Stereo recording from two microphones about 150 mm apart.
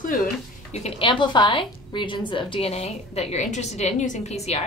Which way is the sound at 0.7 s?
40° left (ahead or behind).